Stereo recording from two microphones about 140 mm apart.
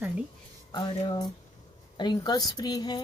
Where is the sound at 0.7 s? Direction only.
30° left (ahead or behind).